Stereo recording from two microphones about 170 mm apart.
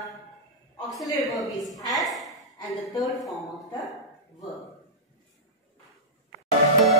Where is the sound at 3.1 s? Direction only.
Centre (ahead or behind).